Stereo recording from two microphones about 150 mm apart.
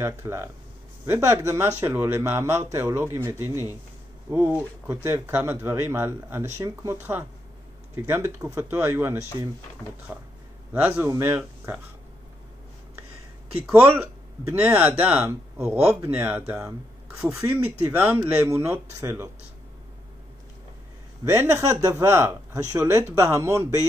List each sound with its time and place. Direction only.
0.0 s speech: 15° right (ahead or behind)
10.7 s speech: 15° right (ahead or behind)
13.7 s speech: 10° right (ahead or behind)
21.2 s speech: 20° right (ahead or behind)